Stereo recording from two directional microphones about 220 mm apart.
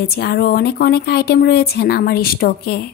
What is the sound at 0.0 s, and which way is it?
A woman's voice, 45° left (ahead or behind).